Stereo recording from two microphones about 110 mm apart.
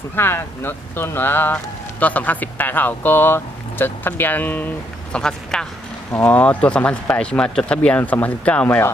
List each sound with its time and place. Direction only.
0.2 s speech: 20° left (ahead or behind)
5.1 s speech: 5° left (ahead or behind)
6.1 s speech: 15° left (ahead or behind)